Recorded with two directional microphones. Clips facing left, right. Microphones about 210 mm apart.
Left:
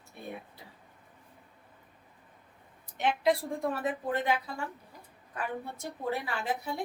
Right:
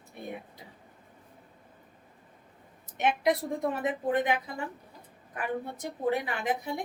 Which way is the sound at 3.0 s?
20° right (ahead or behind).